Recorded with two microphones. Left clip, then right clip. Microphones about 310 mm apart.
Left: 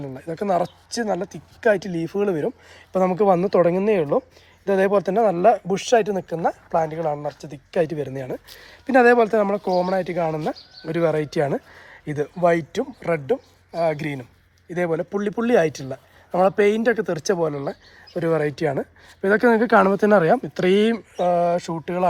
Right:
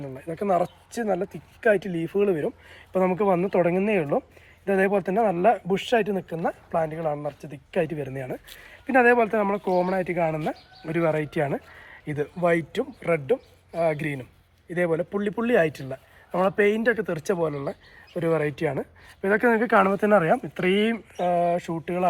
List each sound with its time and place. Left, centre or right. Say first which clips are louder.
0.0 s speech: left 2 dB; left
1.8 s speech: left 2 dB; left
2.9 s speech: left 4 dB; left